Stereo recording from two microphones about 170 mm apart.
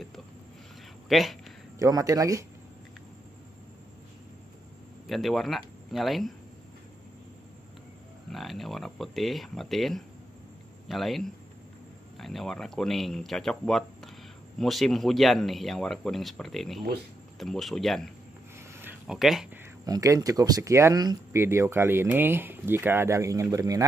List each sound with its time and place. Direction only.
1.0 s speech: centre (ahead or behind)
1.8 s speech: 20° right (ahead or behind)
5.0 s speech: centre (ahead or behind)
8.3 s speech: centre (ahead or behind)
18.6 s a sound: 15° right (ahead or behind)
19.0 s speech: centre (ahead or behind)
19.9 s speech: 20° right (ahead or behind)